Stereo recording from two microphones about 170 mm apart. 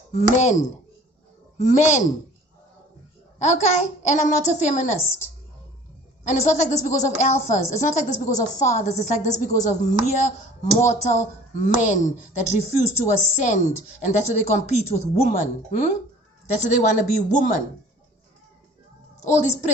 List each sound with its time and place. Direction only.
0.1 s a woman's voice: 45° left (ahead or behind)
3.3 s a woman's voice: 45° left (ahead or behind)
6.2 s a woman's voice: 45° left (ahead or behind)
19.2 s a woman's voice: 45° left (ahead or behind)